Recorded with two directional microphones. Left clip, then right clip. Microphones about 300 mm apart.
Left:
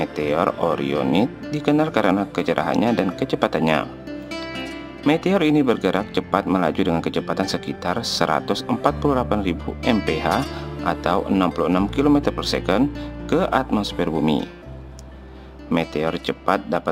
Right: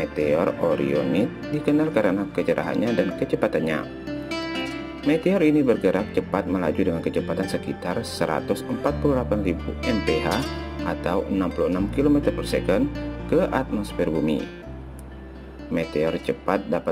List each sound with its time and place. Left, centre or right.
0.0 s speech: centre
4.1 s music: centre
5.0 s speech: centre
10.3 s speech: centre
10.9 s speech: centre
15.7 s speech: centre